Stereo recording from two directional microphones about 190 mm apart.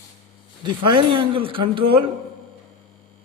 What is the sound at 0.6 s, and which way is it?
A man's voice, 25° right (ahead or behind).